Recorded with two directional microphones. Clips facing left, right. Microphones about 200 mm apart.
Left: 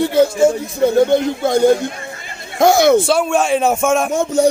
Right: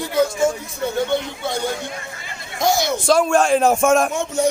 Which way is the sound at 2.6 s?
60° left (ahead or behind).